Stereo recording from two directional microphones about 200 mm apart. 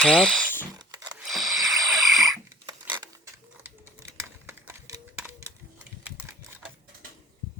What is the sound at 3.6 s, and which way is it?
Typewriter, 10° right (ahead or behind).